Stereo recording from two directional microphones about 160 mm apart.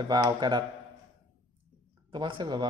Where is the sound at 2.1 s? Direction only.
30° right (ahead or behind).